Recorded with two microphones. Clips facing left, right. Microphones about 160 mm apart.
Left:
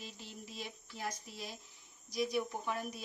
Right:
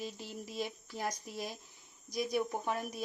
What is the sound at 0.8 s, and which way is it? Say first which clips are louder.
Speech: right 4 dB; 45° right (ahead or behind).